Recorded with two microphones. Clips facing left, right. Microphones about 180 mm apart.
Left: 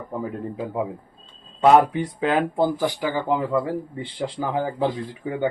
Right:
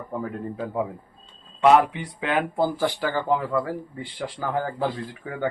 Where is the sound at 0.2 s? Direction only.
15° left (ahead or behind).